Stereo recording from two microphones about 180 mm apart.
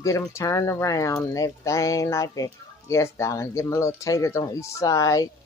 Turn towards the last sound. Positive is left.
turn(degrees=20)  # may be behind; listen again after turning